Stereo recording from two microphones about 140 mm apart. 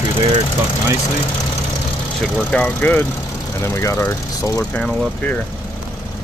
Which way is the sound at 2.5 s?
10° left (ahead or behind).